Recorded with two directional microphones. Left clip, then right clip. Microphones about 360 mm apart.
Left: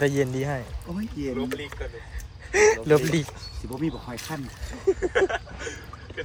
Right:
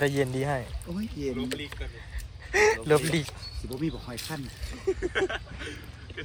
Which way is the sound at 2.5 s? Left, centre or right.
Centre.